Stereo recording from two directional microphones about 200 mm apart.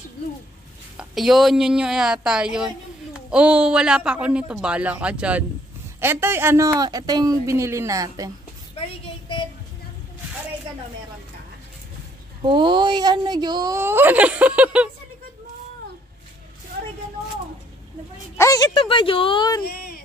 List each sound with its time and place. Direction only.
0.9 s a woman's voice: centre (ahead or behind); by 8.3 s 15° right (ahead or behind)
8.7 s child singing: 30° left (ahead or behind)
12.4 s a woman's voice: 25° right (ahead or behind); by 14.9 s 5° right (ahead or behind)
18.4 s speech: 15° left (ahead or behind)
19.6 s a sound: 50° left (ahead or behind)